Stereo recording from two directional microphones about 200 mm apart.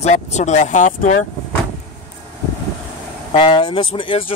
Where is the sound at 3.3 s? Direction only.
25° left (ahead or behind).